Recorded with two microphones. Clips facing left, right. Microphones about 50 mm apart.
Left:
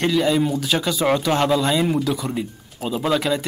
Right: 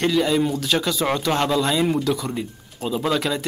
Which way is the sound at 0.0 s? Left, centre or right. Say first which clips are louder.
Left 1 dB; centre.